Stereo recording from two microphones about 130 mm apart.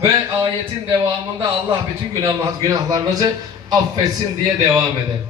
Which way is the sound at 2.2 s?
35° right (ahead or behind).